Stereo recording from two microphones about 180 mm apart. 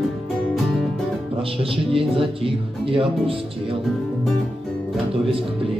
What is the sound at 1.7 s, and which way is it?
Speech, 30° right (ahead or behind).